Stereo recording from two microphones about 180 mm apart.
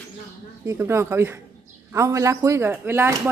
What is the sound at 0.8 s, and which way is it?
Speech, 15° right (ahead or behind).